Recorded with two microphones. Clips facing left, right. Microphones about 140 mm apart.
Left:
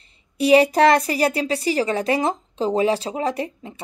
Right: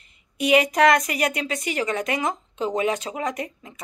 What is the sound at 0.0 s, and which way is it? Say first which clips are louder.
A woman's voice: left 4 dB; 35° left (ahead or behind).